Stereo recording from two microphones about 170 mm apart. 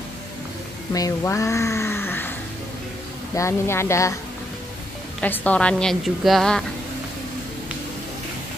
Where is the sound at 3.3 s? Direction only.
15° left (ahead or behind).